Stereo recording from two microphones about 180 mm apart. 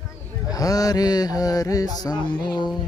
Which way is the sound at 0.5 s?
20° left (ahead or behind).